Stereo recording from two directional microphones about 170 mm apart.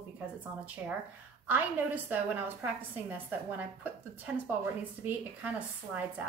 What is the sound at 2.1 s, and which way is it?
A woman's voice, 10° right (ahead or behind).